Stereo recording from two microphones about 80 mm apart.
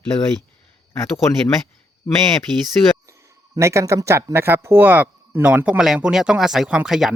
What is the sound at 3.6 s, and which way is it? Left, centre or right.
Speech, right.